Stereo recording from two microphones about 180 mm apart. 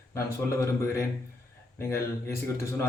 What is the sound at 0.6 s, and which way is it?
A man's voice, 15° left (ahead or behind).